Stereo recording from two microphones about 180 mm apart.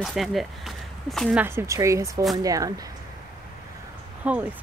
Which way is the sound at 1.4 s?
15° right (ahead or behind).